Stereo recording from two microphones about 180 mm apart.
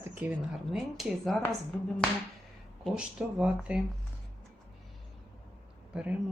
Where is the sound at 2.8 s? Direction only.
5° right (ahead or behind).